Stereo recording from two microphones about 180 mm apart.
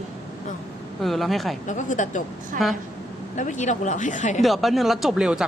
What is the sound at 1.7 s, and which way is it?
Speech, 45° left (ahead or behind).